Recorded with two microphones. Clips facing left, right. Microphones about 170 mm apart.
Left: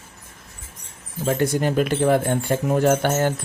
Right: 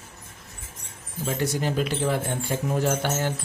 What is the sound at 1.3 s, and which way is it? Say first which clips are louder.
Speech: left 6 dB; 55° left (ahead or behind).